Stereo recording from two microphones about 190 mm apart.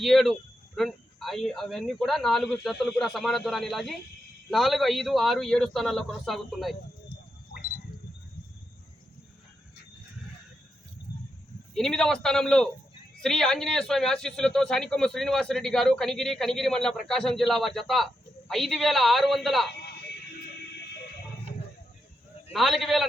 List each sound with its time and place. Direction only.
0.0 s a man's voice: centre (ahead or behind)
11.7 s a man's voice: centre (ahead or behind)
19.7 s a sound: 60° left (ahead or behind)
22.5 s a man's voice: centre (ahead or behind)